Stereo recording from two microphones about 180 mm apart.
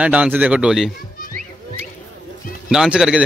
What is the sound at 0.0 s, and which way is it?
Speech, 5° right (ahead or behind).